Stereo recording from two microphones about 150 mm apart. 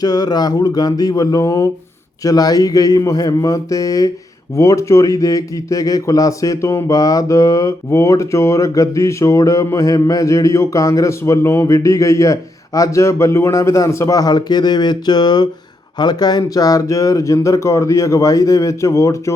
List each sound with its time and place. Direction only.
0.0 s speech: 25° left (ahead or behind)